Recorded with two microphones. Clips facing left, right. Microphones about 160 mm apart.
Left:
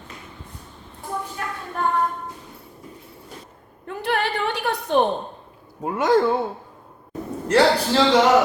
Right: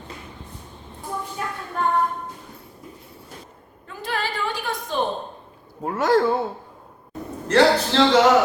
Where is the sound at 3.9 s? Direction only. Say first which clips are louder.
Left 4 dB; 60° left (ahead or behind).